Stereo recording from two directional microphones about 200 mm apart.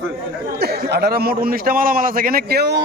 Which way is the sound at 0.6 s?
55° right (ahead or behind).